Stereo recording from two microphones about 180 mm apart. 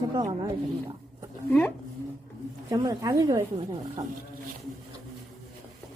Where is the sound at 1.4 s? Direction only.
10° left (ahead or behind).